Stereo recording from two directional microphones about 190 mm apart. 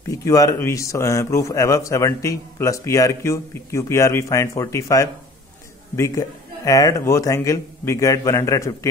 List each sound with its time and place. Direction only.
0.1 s a man's voice: 15° left (ahead or behind)